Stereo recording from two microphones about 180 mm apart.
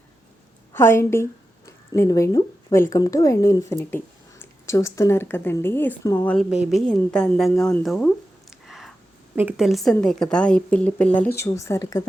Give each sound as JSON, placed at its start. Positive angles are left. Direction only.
{"t": 0.7, "sound": "a woman's voice", "side_deg": 15}
{"t": 6.5, "sound": "speech", "side_deg": -5}
{"t": 7.6, "sound": "a sound", "side_deg": 5}
{"t": 9.3, "sound": "speech", "side_deg": -10}